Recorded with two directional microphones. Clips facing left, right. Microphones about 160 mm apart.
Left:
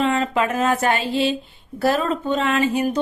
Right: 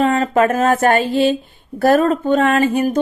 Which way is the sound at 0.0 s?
40° right (ahead or behind).